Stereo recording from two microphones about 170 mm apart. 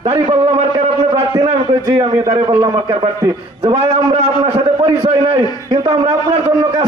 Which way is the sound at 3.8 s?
40° right (ahead or behind).